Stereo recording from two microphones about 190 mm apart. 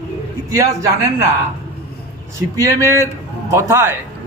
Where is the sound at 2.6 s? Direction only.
15° right (ahead or behind).